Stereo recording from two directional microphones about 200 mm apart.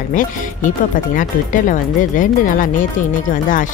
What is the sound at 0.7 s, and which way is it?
Speech, 40° left (ahead or behind).